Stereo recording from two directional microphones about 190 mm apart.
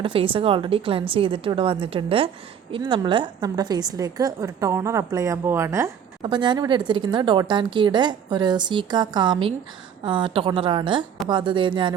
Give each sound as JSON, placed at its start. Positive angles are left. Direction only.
{"t": 0.0, "sound": "a woman's voice", "side_deg": -30}